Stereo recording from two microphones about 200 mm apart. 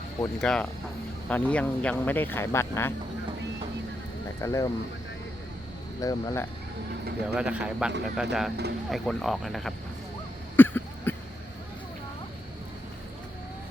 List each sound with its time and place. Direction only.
0.4 s speech: 5° left (ahead or behind)
4.4 s speech: 15° left (ahead or behind)
6.0 s speech: 15° left (ahead or behind)
7.3 s speech: 5° right (ahead or behind)
10.6 s cough: 10° left (ahead or behind)